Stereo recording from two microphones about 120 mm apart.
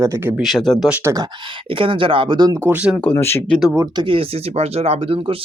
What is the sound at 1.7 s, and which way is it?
Speech, 45° right (ahead or behind).